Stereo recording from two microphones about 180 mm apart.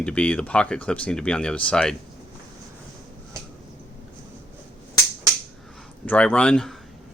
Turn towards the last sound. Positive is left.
turn(degrees=5)  # may be behind; listen again after turning